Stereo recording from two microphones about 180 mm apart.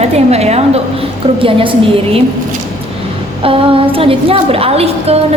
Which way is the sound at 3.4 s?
30° right (ahead or behind).